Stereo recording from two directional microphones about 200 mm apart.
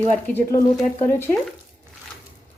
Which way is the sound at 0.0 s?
10° left (ahead or behind).